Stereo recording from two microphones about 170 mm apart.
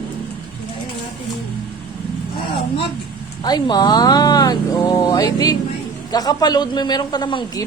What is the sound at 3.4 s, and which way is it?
Speech, 25° left (ahead or behind).